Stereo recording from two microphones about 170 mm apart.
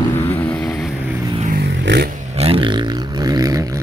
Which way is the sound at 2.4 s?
30° right (ahead or behind).